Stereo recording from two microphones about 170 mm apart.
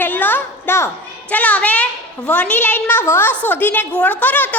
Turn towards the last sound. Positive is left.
turn(degrees=10)  # may be behind; listen again after turning